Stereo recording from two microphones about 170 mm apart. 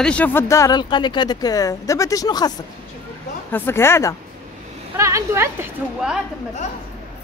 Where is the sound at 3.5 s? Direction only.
15° left (ahead or behind).